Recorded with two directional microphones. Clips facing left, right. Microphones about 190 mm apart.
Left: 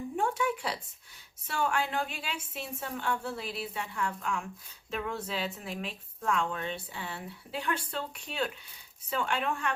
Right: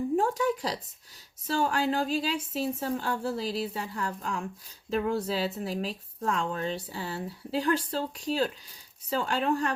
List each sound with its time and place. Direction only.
0.2 s speech: 35° right (ahead or behind)